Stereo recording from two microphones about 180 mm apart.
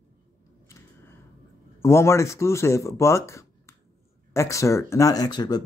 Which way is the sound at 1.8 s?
15° left (ahead or behind).